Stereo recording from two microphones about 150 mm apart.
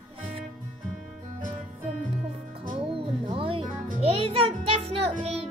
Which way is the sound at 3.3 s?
40° right (ahead or behind).